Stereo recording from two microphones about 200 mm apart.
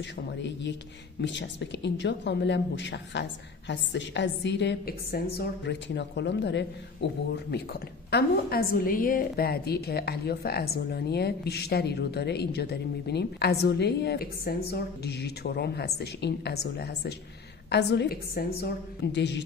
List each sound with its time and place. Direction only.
0.4 s speech: 60° left (ahead or behind)
8.1 s a woman's voice: 50° left (ahead or behind)